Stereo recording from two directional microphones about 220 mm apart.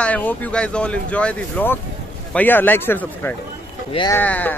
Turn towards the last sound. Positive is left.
turn(degrees=5)  # may be behind; listen again after turning